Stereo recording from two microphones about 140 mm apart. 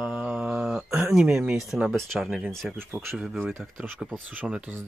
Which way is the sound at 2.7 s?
15° right (ahead or behind).